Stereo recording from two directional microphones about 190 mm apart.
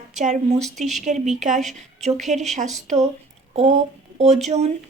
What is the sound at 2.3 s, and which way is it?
Speech, 40° right (ahead or behind).